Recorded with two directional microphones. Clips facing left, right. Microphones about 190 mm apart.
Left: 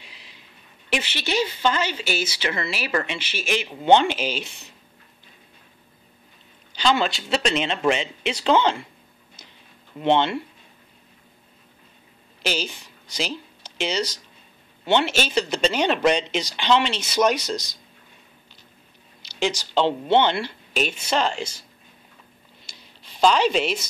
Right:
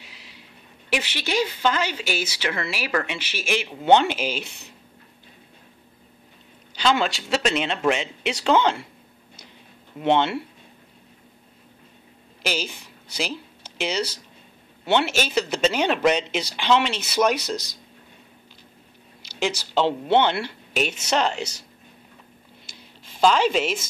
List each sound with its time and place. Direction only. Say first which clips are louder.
0.0 s a sound: right 1 dB; 10° right (ahead or behind)
0.8 s speech: even; 10° right (ahead or behind)
6.7 s speech: even; 10° right (ahead or behind)
9.9 s speech: even; 5° right (ahead or behind)
12.4 s speech: left 1 dB; 10° right (ahead or behind)
19.2 s speech: left 1 dB; 10° right (ahead or behind)
20.9 s speech: even; 75° right (ahead or behind)
22.7 s a sound: right 2 dB; 50° right (ahead or behind)
23.2 s speech: even; 5° right (ahead or behind)